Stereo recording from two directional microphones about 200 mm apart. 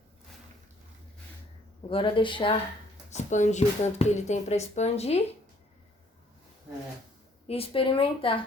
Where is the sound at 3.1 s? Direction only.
35° left (ahead or behind).